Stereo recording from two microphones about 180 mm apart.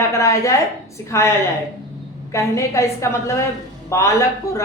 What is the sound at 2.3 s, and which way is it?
A woman's voice, 15° left (ahead or behind).